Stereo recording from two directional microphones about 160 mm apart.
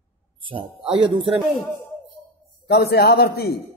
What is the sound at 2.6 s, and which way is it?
Speech, 80° left.